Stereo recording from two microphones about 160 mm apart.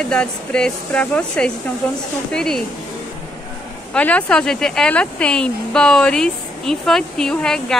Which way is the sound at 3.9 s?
10° left (ahead or behind).